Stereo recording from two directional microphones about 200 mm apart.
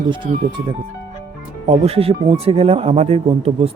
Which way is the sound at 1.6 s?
30° right (ahead or behind).